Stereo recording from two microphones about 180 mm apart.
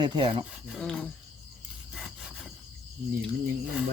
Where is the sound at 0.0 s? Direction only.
25° right (ahead or behind).